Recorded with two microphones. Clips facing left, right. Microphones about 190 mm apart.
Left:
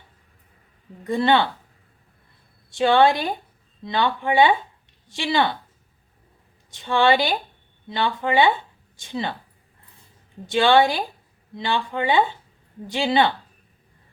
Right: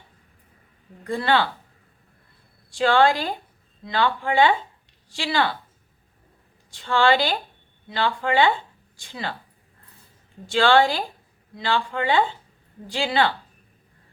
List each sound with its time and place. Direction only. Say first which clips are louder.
1.0 s speech: left 3 dB; 20° left (ahead or behind)
2.6 s speech: left 2 dB; 20° left (ahead or behind)
6.7 s speech: left 1 dB; 20° left (ahead or behind)
10.4 s speech: left 1 dB; 20° left (ahead or behind)